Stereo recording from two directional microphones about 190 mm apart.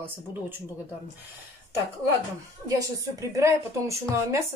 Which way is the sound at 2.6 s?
15° right (ahead or behind).